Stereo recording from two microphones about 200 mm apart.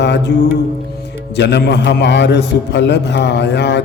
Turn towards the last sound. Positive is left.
turn(degrees=60)  # may be behind; listen again after turning